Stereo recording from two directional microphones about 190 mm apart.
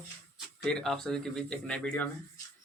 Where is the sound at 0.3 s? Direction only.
5° left (ahead or behind).